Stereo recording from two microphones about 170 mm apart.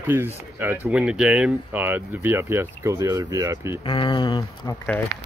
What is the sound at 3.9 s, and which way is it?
Speech, 30° left (ahead or behind).